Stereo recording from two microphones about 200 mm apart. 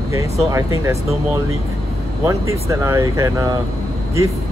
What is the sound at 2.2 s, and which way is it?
Speech, 15° right (ahead or behind).